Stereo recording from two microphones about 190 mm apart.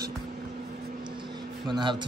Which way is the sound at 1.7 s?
20° right (ahead or behind).